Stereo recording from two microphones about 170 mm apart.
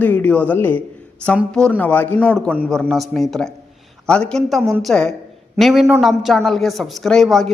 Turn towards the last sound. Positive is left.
turn(degrees=0)  # may be behind; listen again after turning